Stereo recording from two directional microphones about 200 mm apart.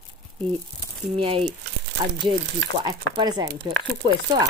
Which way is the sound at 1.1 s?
25° right (ahead or behind).